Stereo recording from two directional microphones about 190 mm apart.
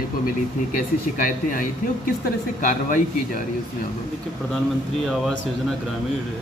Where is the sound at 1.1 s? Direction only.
45° left (ahead or behind).